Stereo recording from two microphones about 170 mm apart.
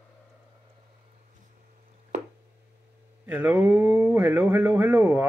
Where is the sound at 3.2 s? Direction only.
10° right (ahead or behind).